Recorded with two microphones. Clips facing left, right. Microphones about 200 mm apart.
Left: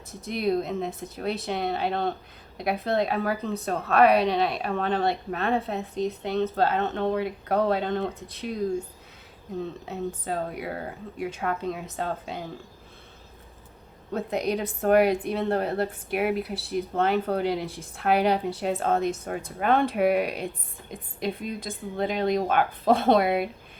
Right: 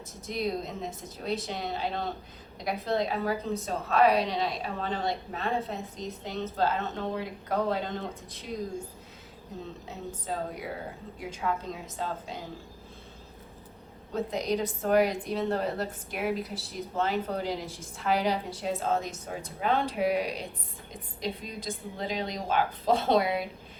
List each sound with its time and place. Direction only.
0.3 s a woman's voice: 60° left (ahead or behind)
9.8 s a woman's voice: 60° left (ahead or behind)
14.1 s a woman's voice: 60° left (ahead or behind)